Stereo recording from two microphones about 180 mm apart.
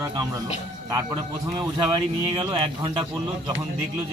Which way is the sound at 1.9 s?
25° right (ahead or behind).